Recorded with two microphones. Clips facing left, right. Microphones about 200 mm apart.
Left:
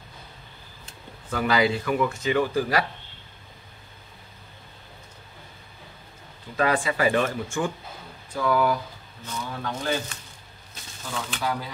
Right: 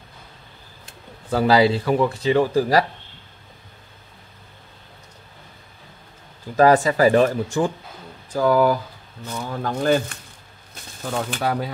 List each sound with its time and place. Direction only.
1.3 s speech: 30° right (ahead or behind)
6.5 s speech: 40° right (ahead or behind)
9.8 s speech: 60° right (ahead or behind)